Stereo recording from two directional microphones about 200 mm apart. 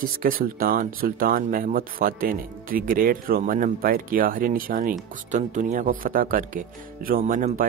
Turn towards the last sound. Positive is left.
turn(degrees=-40)  # may be behind; listen again after turning